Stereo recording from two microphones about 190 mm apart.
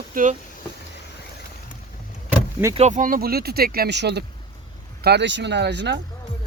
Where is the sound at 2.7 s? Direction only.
40° right (ahead or behind); by 6.0 s 65° right (ahead or behind).